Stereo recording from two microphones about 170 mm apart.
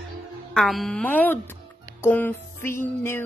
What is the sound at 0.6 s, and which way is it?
A woman's voice, centre (ahead or behind).